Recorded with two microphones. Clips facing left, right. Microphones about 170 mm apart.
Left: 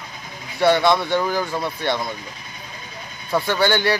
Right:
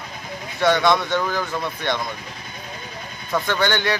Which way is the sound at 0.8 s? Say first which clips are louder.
Left 1 dB; 15° left (ahead or behind).